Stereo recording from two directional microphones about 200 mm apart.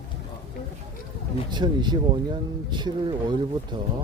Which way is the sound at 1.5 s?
20° right (ahead or behind).